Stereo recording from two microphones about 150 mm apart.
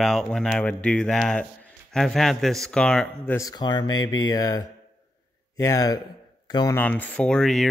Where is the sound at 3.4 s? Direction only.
25° left (ahead or behind).